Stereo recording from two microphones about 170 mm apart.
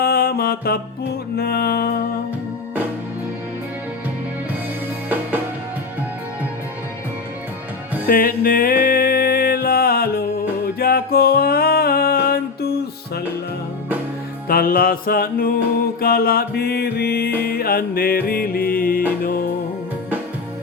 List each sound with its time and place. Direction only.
0.0 s music: 65° left (ahead or behind)
8.0 s music: 60° left (ahead or behind)
14.4 s music: 60° left (ahead or behind)